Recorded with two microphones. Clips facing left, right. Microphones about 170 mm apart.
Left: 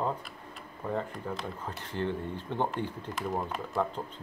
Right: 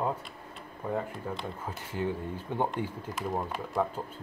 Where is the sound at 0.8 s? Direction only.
10° right (ahead or behind).